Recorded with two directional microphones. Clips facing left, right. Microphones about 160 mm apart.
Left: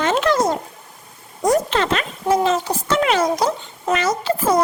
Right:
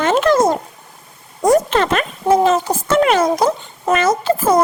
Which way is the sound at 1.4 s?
50° right (ahead or behind).